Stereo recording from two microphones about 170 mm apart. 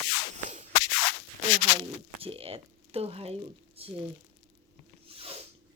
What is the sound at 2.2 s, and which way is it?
Speech, 35° right (ahead or behind).